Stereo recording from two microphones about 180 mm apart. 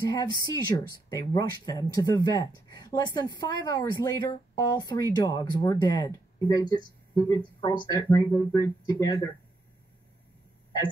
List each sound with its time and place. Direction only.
0.1 s speech: 20° left (ahead or behind)